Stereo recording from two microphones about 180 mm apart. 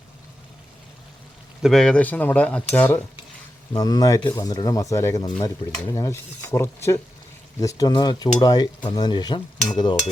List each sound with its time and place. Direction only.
1.6 s speech: centre (ahead or behind)
3.7 s stir: 20° left (ahead or behind)
5.9 s speech: 15° left (ahead or behind)
7.6 s stir: 20° left (ahead or behind)